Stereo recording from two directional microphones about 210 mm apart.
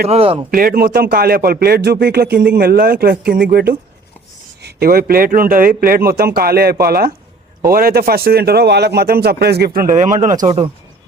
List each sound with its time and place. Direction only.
0.1 s speech: 25° right (ahead or behind)
0.5 s a man's voice: 45° right (ahead or behind)